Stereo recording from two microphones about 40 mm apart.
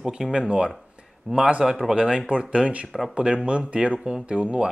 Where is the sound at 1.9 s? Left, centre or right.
Right.